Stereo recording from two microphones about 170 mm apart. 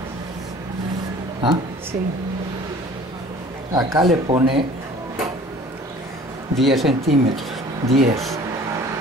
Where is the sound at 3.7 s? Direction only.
25° right (ahead or behind).